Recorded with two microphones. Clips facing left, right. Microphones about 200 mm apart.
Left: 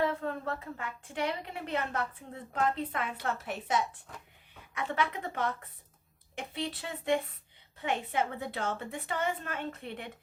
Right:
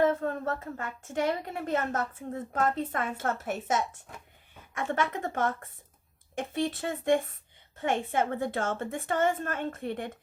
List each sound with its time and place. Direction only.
0.0 s a woman's voice: 45° right (ahead or behind)